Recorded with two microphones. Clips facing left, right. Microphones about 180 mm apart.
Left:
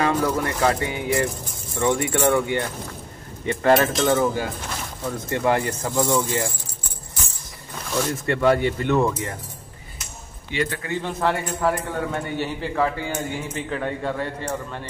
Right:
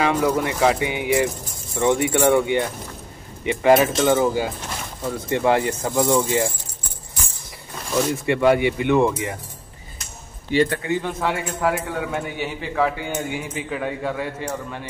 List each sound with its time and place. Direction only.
0.0 s speech: 15° right (ahead or behind)
4.1 s speech: 20° right (ahead or behind)
8.3 s speech: 10° right (ahead or behind)
10.5 s speech: 40° right (ahead or behind)
11.0 s a man's voice: centre (ahead or behind)